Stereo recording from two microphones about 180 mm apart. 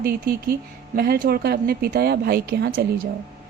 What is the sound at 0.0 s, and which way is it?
A woman's voice, 55° right (ahead or behind).